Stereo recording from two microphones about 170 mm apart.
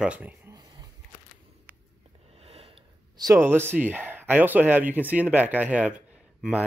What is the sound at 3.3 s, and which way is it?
Speech, 15° right (ahead or behind).